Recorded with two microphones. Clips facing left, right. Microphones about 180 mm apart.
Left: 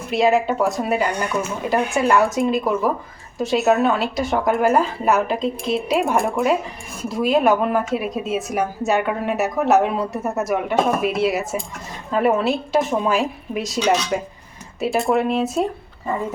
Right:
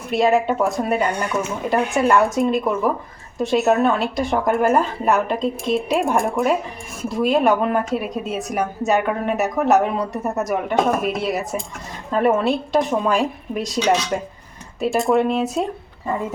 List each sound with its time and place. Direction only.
0.1 s a woman's voice: centre (ahead or behind)